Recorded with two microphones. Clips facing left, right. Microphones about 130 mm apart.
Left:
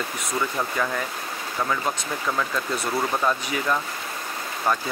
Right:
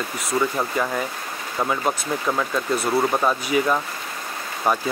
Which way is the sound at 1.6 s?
20° right (ahead or behind).